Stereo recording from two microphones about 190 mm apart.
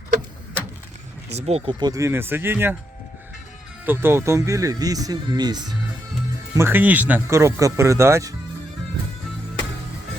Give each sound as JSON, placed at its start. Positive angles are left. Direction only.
{"t": 1.4, "sound": "speech", "side_deg": -35}
{"t": 3.8, "sound": "speech", "side_deg": -10}
{"t": 6.6, "sound": "speech", "side_deg": -10}